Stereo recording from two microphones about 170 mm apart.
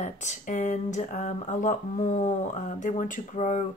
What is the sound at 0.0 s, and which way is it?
Speech, 45° left (ahead or behind).